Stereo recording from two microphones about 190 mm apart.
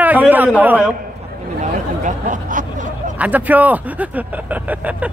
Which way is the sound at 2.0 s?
45° right (ahead or behind).